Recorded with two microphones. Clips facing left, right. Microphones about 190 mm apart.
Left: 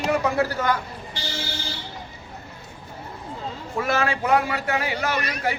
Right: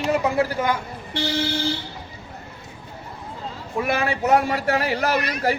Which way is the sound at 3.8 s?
15° right (ahead or behind).